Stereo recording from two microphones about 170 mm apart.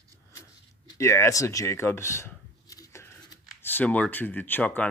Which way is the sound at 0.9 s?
15° left (ahead or behind).